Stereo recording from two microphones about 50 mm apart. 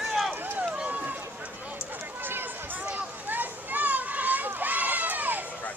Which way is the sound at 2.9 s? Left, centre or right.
Right.